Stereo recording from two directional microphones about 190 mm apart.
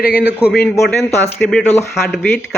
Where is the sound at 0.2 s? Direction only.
5° right (ahead or behind).